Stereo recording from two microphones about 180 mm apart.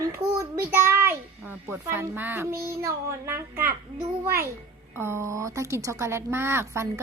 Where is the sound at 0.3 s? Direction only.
15° right (ahead or behind).